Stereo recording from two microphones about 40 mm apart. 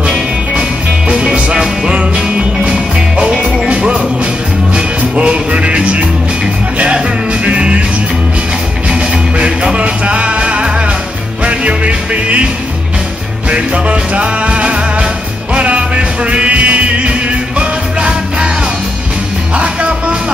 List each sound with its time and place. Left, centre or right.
0.6 s music: right
7.4 s music: right
8.8 s music: right
13.5 s music: right
19.5 s music: right